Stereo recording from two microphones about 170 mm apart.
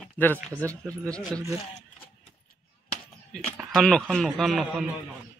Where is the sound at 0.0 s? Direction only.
10° left (ahead or behind).